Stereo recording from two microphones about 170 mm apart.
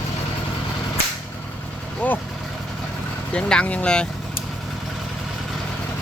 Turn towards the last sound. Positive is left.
turn(degrees=5)  # may be behind; listen again after turning